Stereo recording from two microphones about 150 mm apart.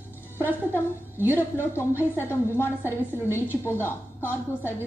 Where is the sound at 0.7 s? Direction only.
15° left (ahead or behind).